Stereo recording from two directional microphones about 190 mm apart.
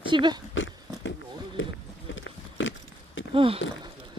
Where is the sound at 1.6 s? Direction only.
90° left.